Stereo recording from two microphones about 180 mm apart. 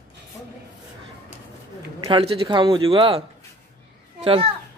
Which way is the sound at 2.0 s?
30° right (ahead or behind).